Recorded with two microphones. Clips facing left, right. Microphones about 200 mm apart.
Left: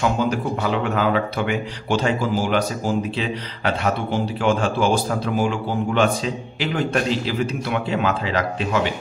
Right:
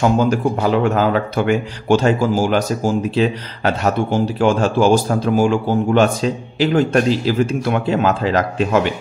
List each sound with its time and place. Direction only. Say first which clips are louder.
0.0 s a man's voice: right 6 dB; 45° right (ahead or behind)